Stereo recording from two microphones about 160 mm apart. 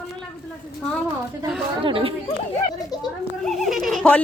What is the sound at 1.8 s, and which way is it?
Speech, 35° right (ahead or behind).